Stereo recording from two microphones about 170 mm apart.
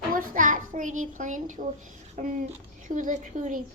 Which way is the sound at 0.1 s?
55° right (ahead or behind).